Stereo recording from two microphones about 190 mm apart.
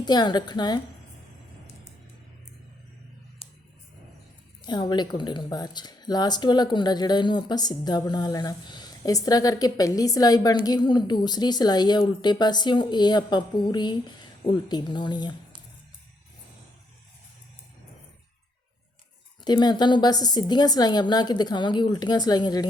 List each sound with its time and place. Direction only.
0.0 s a woman's voice: 25° left (ahead or behind)
4.6 s a woman's voice: 20° left (ahead or behind)
19.5 s a woman's voice: 20° left (ahead or behind)